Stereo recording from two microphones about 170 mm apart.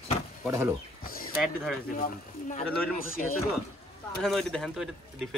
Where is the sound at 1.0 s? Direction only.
60° left (ahead or behind).